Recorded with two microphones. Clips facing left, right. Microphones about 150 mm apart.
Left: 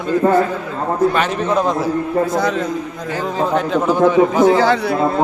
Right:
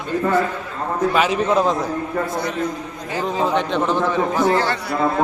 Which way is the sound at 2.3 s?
90° left.